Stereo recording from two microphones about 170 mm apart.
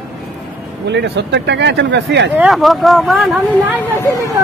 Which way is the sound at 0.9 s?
90° right.